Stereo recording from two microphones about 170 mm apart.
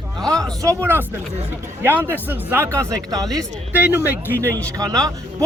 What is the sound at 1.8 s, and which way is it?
Speech, 15° right (ahead or behind).